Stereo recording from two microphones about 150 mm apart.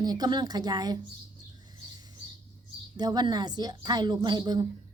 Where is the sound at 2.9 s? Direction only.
25° right (ahead or behind).